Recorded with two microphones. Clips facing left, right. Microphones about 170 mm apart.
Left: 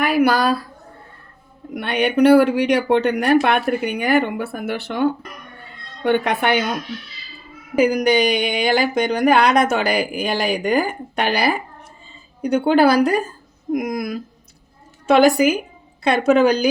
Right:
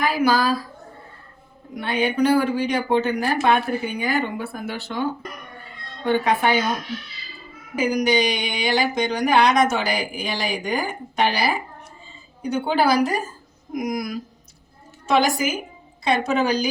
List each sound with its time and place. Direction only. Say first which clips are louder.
0.0 s a woman's voice: left 3 dB; 65° left (ahead or behind)
1.7 s speech: left 3 dB; 70° left (ahead or behind)
6.1 s speech: left 2 dB; 65° left (ahead or behind)
7.8 s a woman's voice: left 4 dB; 55° left (ahead or behind)